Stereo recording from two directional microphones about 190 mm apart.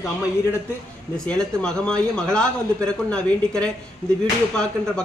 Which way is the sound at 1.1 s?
5° left (ahead or behind).